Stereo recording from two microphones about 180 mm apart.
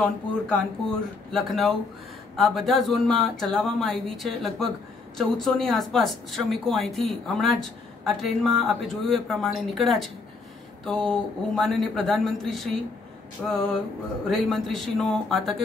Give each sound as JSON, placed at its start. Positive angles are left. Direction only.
{"t": 0.5, "sound": "a woman's voice", "side_deg": 5}